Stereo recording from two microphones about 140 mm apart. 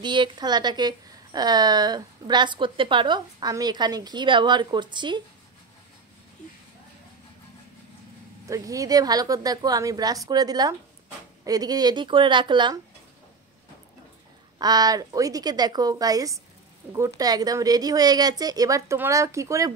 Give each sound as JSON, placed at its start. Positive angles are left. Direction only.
{"t": 0.0, "sound": "a woman's voice", "side_deg": -35}
{"t": 8.5, "sound": "a woman's voice", "side_deg": -25}
{"t": 14.6, "sound": "a woman's voice", "side_deg": -25}